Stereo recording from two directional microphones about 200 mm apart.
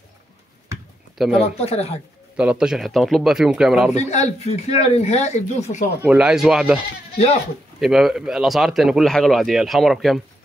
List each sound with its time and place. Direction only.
1.1 s speech: centre (ahead or behind)
1.4 s speech: 30° left (ahead or behind)
2.3 s speech: 5° right (ahead or behind)
3.9 s speech: 35° left (ahead or behind)
6.0 s speech: 5° right (ahead or behind)
7.8 s speech: centre (ahead or behind)